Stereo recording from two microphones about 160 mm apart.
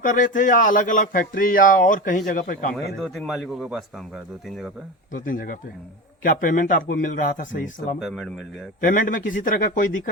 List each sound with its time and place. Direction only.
0.0 s speech: 55° left (ahead or behind)
3.0 s speech: centre (ahead or behind)
5.1 s speech: 60° left (ahead or behind)
7.9 s speech: centre (ahead or behind)
8.8 s speech: 55° left (ahead or behind)